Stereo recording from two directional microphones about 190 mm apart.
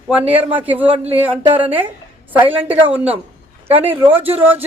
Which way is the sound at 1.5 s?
30° right (ahead or behind).